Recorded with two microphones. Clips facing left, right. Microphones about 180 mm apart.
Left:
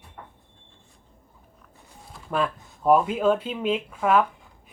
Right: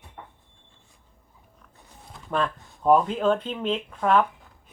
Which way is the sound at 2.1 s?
5° left (ahead or behind).